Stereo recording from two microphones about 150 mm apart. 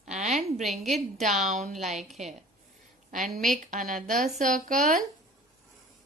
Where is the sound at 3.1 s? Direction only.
60° right (ahead or behind).